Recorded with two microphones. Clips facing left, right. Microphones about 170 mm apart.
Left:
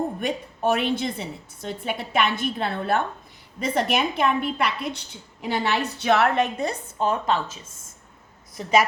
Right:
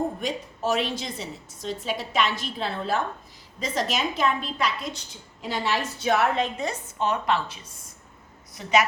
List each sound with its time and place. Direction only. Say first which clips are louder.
0.2 s a woman's voice: left 3 dB; 60° left (ahead or behind)
7.4 s speech: left 1 dB; 45° left (ahead or behind)